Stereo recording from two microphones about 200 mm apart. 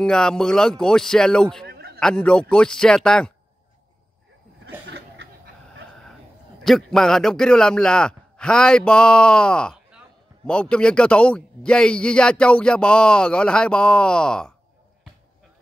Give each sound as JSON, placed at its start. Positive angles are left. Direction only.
{"t": 0.0, "sound": "a man's voice", "side_deg": 5}
{"t": 1.7, "sound": "a sound", "side_deg": -50}
{"t": 2.0, "sound": "a man's voice", "side_deg": 5}
{"t": 4.6, "sound": "cough", "side_deg": -60}
{"t": 6.6, "sound": "a man's voice", "side_deg": 0}